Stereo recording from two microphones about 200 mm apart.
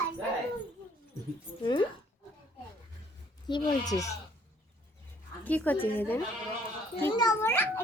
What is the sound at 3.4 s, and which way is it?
Speech, 20° left (ahead or behind).